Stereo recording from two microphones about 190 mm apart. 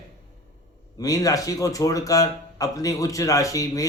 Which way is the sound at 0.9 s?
20° left (ahead or behind).